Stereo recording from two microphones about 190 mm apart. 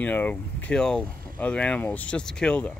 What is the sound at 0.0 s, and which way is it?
Speech, 10° left (ahead or behind).